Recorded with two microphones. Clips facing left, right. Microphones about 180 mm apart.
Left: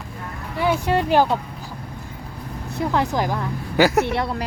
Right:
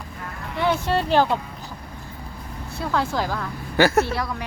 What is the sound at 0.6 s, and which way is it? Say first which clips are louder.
Speech: left 2 dB; 10° left (ahead or behind).